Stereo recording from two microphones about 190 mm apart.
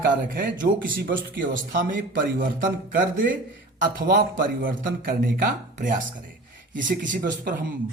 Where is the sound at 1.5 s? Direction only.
50° right (ahead or behind).